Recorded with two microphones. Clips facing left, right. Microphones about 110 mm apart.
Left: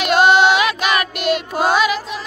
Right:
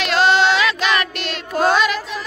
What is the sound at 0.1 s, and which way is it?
Child singing, 15° left (ahead or behind).